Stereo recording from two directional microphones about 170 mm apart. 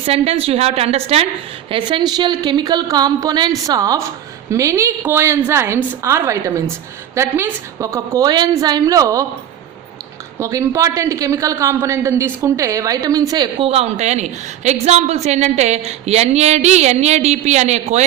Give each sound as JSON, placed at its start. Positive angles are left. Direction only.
{"t": 0.0, "sound": "a man's voice", "side_deg": -35}
{"t": 10.4, "sound": "a man's voice", "side_deg": -15}